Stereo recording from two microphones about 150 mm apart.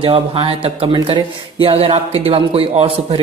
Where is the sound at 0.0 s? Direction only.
35° right (ahead or behind).